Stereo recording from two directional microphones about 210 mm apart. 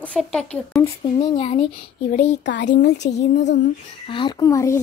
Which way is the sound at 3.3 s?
55° left (ahead or behind).